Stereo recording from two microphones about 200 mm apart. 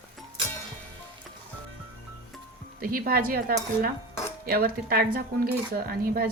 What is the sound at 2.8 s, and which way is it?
A woman's voice, 45° right (ahead or behind).